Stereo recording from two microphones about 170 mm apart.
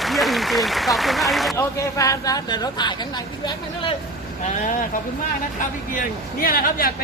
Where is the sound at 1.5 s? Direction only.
20° left (ahead or behind).